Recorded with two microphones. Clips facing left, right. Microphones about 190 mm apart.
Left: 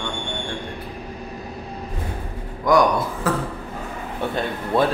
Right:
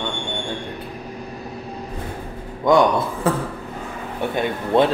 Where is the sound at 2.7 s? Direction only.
25° right (ahead or behind).